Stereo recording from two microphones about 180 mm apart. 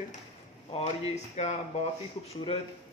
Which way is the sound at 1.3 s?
35° left (ahead or behind).